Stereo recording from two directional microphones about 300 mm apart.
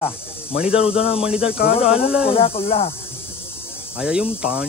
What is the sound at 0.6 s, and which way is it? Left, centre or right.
Speech, centre.